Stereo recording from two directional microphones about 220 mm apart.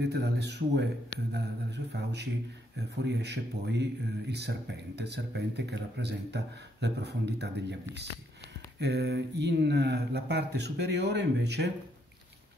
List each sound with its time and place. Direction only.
0.0 s a man's voice: 50° right (ahead or behind)
8.7 s a man's voice: 50° right (ahead or behind)